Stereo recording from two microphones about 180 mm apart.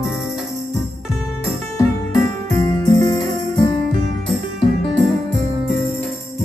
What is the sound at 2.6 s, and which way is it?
Music, 15° left (ahead or behind).